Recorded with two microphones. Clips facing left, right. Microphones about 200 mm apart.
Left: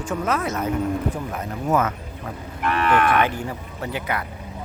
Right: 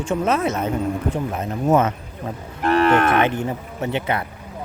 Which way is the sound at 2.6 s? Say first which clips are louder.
Right 6 dB; 40° right (ahead or behind).